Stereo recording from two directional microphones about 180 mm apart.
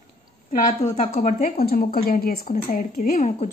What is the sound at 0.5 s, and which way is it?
A woman's voice, 40° left (ahead or behind).